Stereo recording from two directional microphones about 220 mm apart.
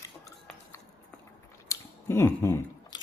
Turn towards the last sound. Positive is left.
turn(degrees=15)  # may be behind; listen again after turning